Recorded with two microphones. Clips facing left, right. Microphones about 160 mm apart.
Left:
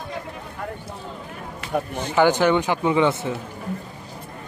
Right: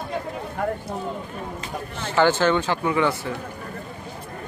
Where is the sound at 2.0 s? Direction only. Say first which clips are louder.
Left 1 dB; 15° left (ahead or behind).